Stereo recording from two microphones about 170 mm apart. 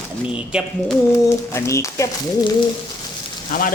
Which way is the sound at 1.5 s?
15° left (ahead or behind).